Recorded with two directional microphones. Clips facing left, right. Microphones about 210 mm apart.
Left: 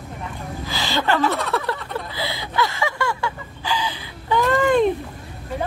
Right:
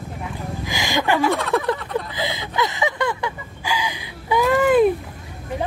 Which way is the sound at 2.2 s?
20° right (ahead or behind).